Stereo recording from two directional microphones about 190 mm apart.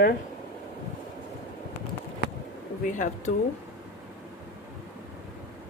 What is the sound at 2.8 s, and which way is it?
Speech, 40° left (ahead or behind).